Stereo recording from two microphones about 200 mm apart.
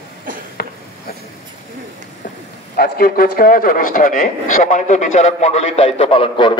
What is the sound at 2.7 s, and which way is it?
A man's voice, 50° left (ahead or behind).